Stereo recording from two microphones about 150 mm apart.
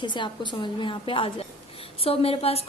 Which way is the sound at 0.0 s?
30° left (ahead or behind).